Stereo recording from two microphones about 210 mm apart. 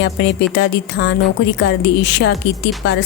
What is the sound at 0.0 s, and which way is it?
Speech, 60° left (ahead or behind).